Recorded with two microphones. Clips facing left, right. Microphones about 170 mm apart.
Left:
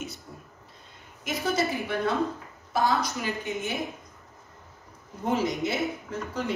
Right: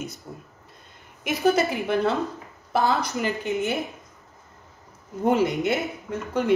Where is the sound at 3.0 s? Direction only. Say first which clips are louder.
Right 4 dB; 60° right (ahead or behind).